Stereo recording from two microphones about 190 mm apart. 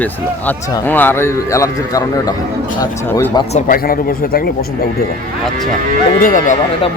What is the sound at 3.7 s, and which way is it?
Speech, 50° left (ahead or behind).